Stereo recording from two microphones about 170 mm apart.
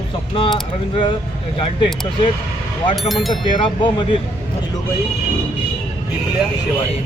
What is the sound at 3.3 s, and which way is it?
Speech, 25° left (ahead or behind).